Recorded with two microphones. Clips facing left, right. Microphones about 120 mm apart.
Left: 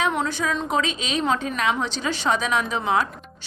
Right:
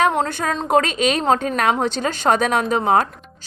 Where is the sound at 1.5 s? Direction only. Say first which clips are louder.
Right 5 dB; 55° right (ahead or behind).